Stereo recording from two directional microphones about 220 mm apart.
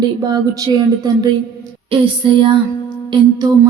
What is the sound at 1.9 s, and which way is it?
Music, 25° right (ahead or behind).